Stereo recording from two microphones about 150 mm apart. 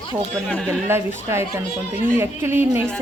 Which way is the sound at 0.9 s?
15° right (ahead or behind).